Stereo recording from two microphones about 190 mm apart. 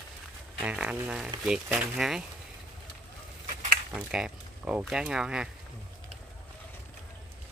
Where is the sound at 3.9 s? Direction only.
5° right (ahead or behind).